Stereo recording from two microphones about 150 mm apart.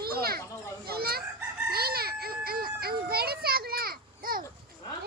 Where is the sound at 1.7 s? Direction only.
90° right; by 4.4 s 70° right (ahead or behind).